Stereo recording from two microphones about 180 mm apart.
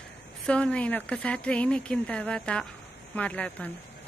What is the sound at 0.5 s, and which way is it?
A woman's voice, 5° left (ahead or behind).